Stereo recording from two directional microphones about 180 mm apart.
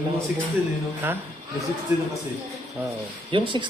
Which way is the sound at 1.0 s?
10° right (ahead or behind).